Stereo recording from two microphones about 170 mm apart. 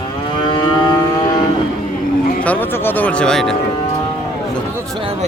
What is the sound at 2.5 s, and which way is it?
Speech, 10° left (ahead or behind).